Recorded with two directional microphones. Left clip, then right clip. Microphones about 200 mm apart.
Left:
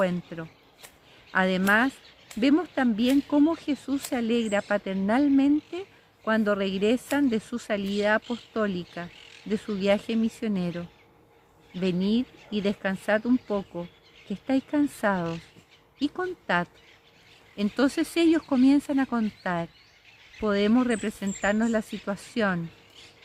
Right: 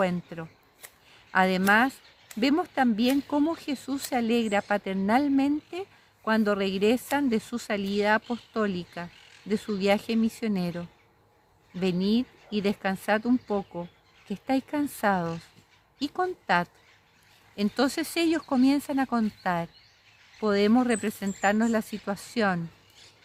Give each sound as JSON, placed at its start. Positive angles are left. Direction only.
{"t": 0.0, "sound": "speech", "side_deg": -35}
{"t": 11.8, "sound": "speech", "side_deg": -35}